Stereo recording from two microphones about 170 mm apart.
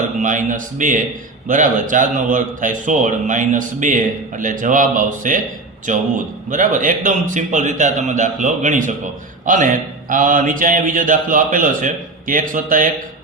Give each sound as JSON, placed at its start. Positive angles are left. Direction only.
{"t": 0.2, "sound": "a man's voice", "side_deg": -50}